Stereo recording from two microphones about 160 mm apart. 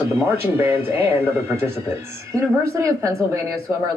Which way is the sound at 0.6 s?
15° right (ahead or behind).